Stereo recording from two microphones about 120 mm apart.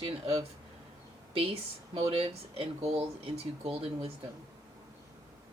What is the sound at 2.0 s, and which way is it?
Speech, 55° right (ahead or behind).